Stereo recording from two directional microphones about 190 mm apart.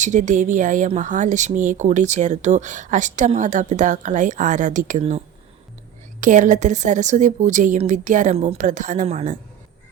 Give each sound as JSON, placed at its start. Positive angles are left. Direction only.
{"t": 0.0, "sound": "speech", "side_deg": -40}